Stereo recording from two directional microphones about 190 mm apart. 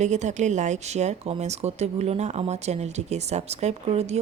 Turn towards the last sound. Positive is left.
turn(degrees=-35)  # may be behind; listen again after turning